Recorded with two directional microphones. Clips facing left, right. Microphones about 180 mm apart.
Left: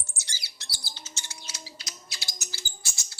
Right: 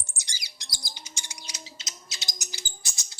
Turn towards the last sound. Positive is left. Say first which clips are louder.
# even
turn(degrees=-20)  # may be behind; listen again after turning